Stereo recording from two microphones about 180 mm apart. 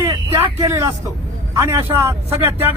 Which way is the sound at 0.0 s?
15° right (ahead or behind).